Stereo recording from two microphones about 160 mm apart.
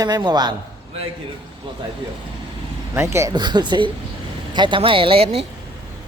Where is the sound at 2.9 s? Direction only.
15° right (ahead or behind); by 5.4 s 40° right (ahead or behind).